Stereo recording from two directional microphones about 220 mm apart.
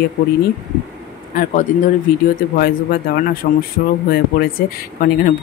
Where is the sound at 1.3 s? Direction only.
40° left (ahead or behind).